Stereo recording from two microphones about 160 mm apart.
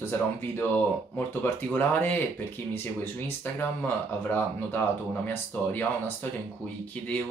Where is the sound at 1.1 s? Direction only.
10° left (ahead or behind).